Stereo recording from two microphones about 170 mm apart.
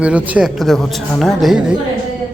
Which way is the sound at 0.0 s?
5° right (ahead or behind).